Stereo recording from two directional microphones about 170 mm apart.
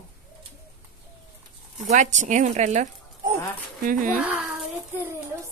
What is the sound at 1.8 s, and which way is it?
Speech, 45° right (ahead or behind).